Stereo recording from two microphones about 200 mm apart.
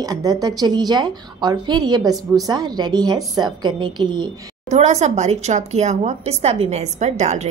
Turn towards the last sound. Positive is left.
turn(degrees=-35)  # may be behind; listen again after turning